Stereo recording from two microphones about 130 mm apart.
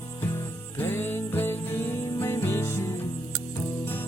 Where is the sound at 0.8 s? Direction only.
20° left (ahead or behind).